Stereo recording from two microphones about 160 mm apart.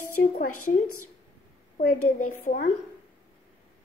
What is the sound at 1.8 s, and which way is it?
Speech, 60° left (ahead or behind).